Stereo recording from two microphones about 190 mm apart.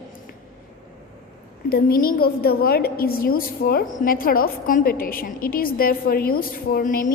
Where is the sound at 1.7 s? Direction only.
55° left (ahead or behind).